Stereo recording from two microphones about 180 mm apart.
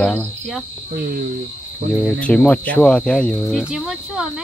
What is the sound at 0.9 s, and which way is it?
Cricket, 55° right (ahead or behind).